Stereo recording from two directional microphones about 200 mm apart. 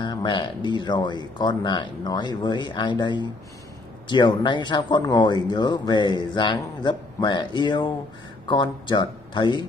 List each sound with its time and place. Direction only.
0.0 s speech: 25° left (ahead or behind)